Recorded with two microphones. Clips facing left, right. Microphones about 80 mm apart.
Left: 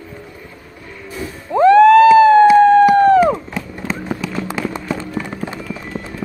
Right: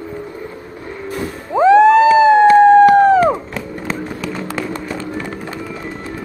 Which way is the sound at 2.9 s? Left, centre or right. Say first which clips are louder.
Even; centre.